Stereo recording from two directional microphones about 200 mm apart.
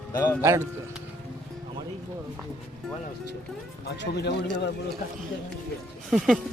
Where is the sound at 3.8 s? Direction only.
55° left (ahead or behind).